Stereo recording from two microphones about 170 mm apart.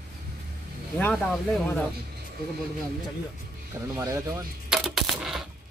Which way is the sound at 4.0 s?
15° right (ahead or behind).